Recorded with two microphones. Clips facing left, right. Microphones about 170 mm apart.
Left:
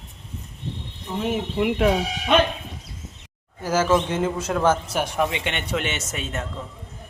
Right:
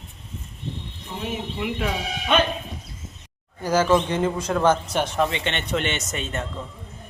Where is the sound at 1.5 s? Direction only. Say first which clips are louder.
Left 9 dB; 55° left (ahead or behind).